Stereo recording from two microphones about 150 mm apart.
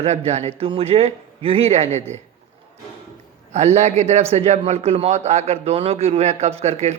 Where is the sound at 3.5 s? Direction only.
50° right (ahead or behind).